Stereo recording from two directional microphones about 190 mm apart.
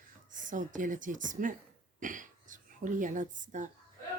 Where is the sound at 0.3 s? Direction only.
45° right (ahead or behind).